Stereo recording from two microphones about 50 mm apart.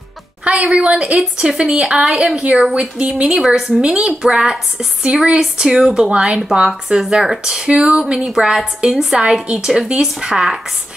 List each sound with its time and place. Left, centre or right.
0.4 s a sound: right
0.7 s a woman's voice: right
1.1 s a woman's voice: centre
8.3 s a woman's voice: centre
9.2 s a woman's voice: centre